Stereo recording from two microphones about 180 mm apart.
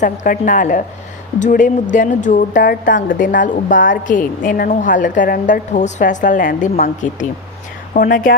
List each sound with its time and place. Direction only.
0.0 s a woman's voice: 45° left (ahead or behind)